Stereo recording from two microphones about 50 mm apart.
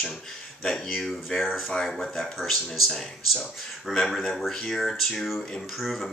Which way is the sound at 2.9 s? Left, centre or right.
Centre.